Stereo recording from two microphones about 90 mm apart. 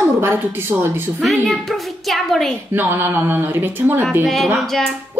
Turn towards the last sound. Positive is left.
turn(degrees=5)  # may be behind; listen again after turning